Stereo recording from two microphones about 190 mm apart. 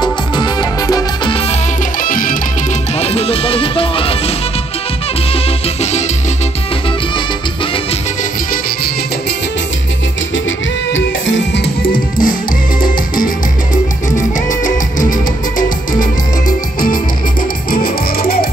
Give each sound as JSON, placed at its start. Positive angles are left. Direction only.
{"t": 0.0, "sound": "music", "side_deg": 20}
{"t": 2.0, "sound": "music", "side_deg": 45}
{"t": 3.0, "sound": "music", "side_deg": 30}
{"t": 5.3, "sound": "music", "side_deg": 35}
{"t": 10.9, "sound": "music", "side_deg": 75}
{"t": 14.5, "sound": "music", "side_deg": 45}